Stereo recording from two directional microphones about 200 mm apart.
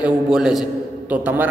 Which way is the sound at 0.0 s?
5° right (ahead or behind).